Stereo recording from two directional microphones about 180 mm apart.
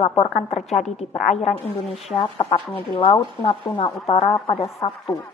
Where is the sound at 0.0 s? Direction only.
30° left (ahead or behind).